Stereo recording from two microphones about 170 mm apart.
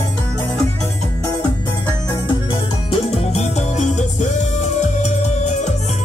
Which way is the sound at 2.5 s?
30° left (ahead or behind).